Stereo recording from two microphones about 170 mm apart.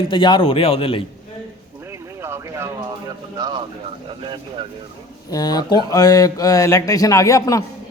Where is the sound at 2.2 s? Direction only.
15° right (ahead or behind).